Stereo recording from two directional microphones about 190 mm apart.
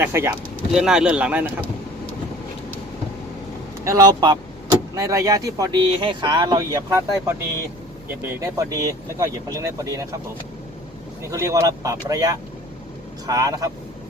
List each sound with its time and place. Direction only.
0.0 s speech: 10° right (ahead or behind)
3.8 s speech: 20° right (ahead or behind)
8.4 s speech: 20° right (ahead or behind)
11.2 s speech: 15° right (ahead or behind)